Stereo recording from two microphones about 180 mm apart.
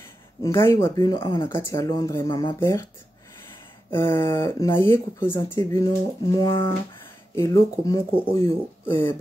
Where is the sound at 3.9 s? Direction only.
15° left (ahead or behind).